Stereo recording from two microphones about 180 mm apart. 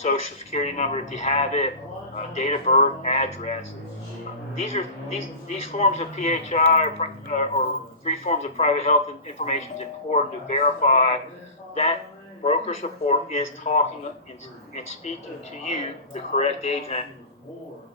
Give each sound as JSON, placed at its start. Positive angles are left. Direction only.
{"t": 0.0, "sound": "a man's voice", "side_deg": 35}
{"t": 4.7, "sound": "a man's voice", "side_deg": 35}
{"t": 16.1, "sound": "a man's voice", "side_deg": 40}